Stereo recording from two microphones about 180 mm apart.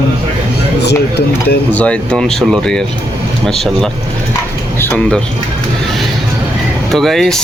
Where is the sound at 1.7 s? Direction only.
5° left (ahead or behind).